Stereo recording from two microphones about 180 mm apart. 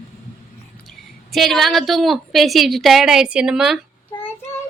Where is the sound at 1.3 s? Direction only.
Centre (ahead or behind).